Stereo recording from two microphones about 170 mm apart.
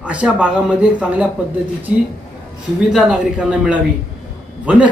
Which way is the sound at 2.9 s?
5° right (ahead or behind).